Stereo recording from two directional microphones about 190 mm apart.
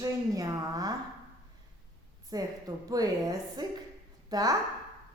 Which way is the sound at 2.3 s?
20° right (ahead or behind).